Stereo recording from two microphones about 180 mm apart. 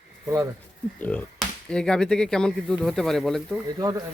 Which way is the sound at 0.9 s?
10° left (ahead or behind).